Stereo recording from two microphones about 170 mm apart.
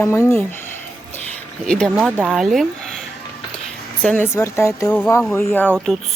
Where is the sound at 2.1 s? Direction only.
10° right (ahead or behind).